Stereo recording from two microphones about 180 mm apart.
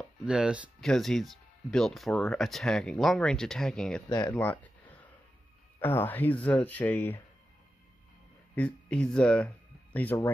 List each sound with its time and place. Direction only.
0.2 s speech: 5° right (ahead or behind)
4.1 s speech: 20° left (ahead or behind)
5.8 s speech: 10° left (ahead or behind)
8.5 s speech: 5° left (ahead or behind)